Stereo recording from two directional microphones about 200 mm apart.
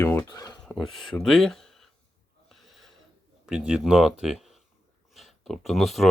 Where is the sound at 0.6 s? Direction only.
Centre (ahead or behind).